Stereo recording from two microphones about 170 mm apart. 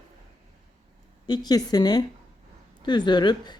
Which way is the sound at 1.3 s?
25° left (ahead or behind).